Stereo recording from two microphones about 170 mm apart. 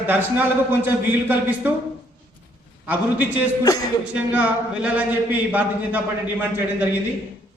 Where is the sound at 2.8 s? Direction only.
10° right (ahead or behind).